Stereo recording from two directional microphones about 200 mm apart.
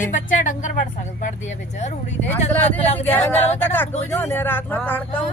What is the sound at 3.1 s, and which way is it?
Speech, 10° left (ahead or behind).